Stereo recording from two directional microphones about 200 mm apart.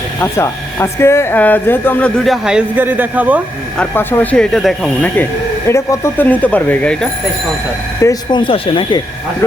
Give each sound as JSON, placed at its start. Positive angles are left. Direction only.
{"t": 0.2, "sound": "speech", "side_deg": 15}
{"t": 3.8, "sound": "speech", "side_deg": 10}
{"t": 8.0, "sound": "speech", "side_deg": 25}